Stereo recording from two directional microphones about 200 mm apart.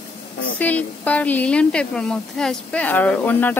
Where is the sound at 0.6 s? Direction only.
10° left (ahead or behind).